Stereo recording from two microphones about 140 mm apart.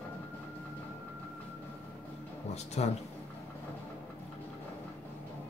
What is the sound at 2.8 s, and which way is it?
Speech, 50° left (ahead or behind).